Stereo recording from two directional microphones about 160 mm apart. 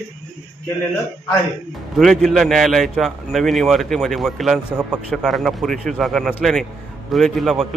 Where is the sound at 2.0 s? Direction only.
Centre (ahead or behind).